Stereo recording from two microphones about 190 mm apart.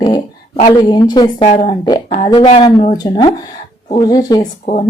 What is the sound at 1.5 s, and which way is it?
Speech, 35° left (ahead or behind).